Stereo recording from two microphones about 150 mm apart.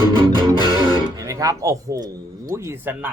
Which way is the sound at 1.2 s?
20° right (ahead or behind).